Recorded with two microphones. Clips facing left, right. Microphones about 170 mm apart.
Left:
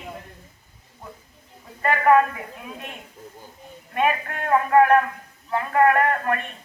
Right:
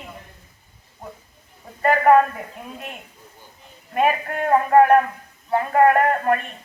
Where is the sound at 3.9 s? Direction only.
40° right (ahead or behind).